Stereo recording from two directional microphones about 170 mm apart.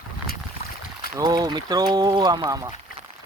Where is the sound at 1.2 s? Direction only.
25° right (ahead or behind).